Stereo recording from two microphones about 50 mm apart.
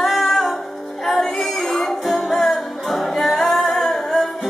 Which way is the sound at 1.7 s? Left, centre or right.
Centre.